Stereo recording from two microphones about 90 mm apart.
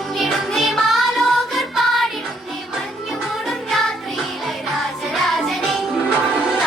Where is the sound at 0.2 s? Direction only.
Centre (ahead or behind).